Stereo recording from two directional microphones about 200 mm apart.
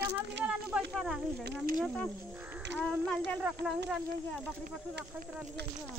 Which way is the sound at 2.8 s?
Centre (ahead or behind).